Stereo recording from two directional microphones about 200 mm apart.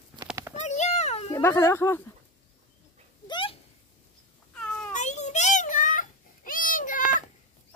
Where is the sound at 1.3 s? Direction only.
10° left (ahead or behind).